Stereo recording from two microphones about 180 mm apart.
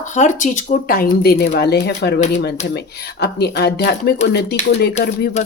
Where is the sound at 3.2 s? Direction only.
65° left (ahead or behind).